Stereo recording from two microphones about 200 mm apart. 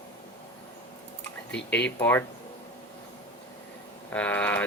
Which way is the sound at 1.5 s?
60° left (ahead or behind).